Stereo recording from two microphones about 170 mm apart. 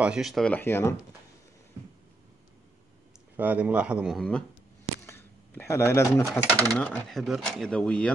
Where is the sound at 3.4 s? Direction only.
10° right (ahead or behind).